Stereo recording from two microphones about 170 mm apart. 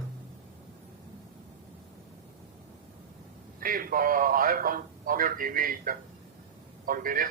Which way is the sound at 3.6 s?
55° right (ahead or behind).